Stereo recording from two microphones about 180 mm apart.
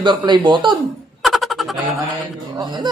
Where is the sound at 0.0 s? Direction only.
25° right (ahead or behind).